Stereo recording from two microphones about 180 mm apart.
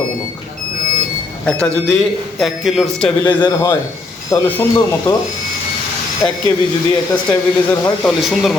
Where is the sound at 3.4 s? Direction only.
15° left (ahead or behind).